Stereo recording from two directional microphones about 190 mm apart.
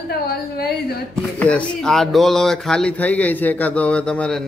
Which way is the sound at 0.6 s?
55° left (ahead or behind).